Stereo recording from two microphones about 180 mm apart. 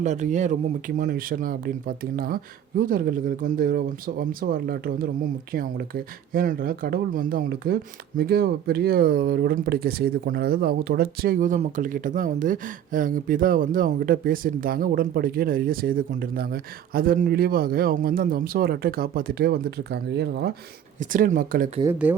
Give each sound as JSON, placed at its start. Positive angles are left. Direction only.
{"t": 0.0, "sound": "speech", "side_deg": -40}
{"t": 21.0, "sound": "speech", "side_deg": -45}
{"t": 21.8, "sound": "speech", "side_deg": -10}